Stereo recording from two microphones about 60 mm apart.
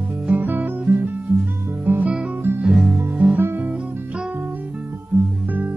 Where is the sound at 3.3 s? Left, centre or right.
Right.